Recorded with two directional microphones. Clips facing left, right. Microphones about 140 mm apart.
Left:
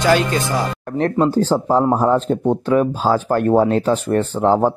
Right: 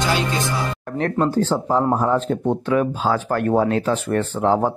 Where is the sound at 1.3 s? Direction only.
35° left (ahead or behind).